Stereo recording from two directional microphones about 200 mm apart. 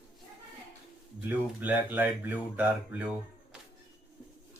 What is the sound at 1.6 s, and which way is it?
Speech, 10° right (ahead or behind).